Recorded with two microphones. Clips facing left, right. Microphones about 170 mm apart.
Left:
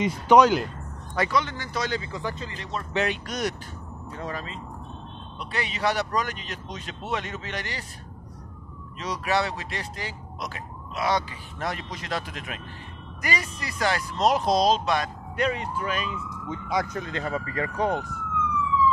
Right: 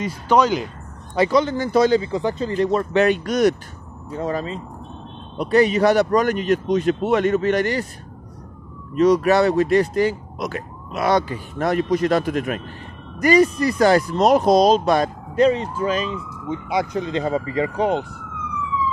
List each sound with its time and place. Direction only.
0.0 s speech: 15° left (ahead or behind)
1.1 s speech: 35° right (ahead or behind)
2.0 s speech: 25° right (ahead or behind); by 3.5 s 55° right (ahead or behind)
4.3 s speech: 40° right (ahead or behind)
8.9 s speech: 50° right (ahead or behind)
15.5 s speech: 25° right (ahead or behind)
16.6 s speech: 10° right (ahead or behind)
17.0 s speech: 25° right (ahead or behind)